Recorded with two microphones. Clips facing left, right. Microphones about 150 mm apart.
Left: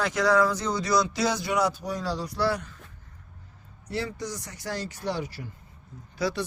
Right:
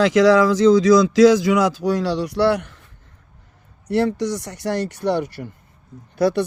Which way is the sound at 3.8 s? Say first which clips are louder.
Right 12 dB; 70° right (ahead or behind).